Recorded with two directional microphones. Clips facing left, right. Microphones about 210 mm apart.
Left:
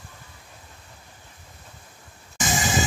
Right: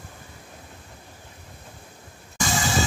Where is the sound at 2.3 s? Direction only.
15° left (ahead or behind).